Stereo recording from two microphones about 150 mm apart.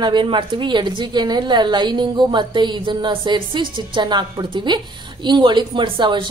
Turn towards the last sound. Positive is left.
turn(degrees=-30)  # may be behind; listen again after turning